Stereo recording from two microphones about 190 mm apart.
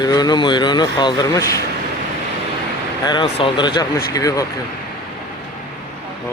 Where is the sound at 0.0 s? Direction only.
20° left (ahead or behind).